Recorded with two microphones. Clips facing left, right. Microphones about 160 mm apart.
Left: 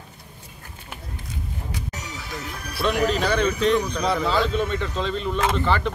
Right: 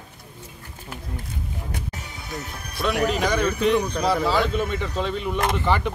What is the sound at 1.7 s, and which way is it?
Music, 55° right (ahead or behind).